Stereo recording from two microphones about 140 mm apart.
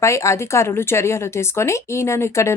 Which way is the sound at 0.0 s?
20° left (ahead or behind).